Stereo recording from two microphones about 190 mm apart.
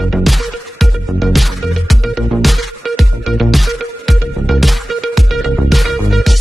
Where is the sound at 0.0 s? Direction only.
Centre (ahead or behind).